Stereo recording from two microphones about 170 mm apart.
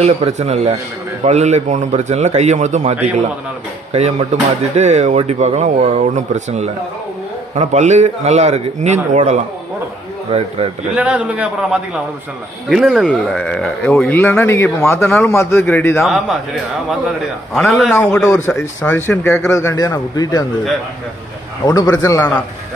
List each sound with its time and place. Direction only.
0.0 s a man's voice: 40° right (ahead or behind)
11.0 s a man's voice: 10° right (ahead or behind); by 16.0 s 10° left (ahead or behind)
16.0 s a man's voice: centre (ahead or behind)
17.6 s a man's voice: centre (ahead or behind); by 20.4 s 20° left (ahead or behind)
21.6 s a man's voice: 20° left (ahead or behind)